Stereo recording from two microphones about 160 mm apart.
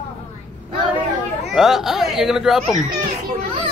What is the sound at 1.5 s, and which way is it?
Speech, 5° right (ahead or behind).